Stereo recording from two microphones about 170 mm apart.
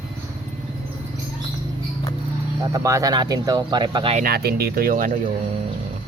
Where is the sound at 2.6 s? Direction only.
20° right (ahead or behind).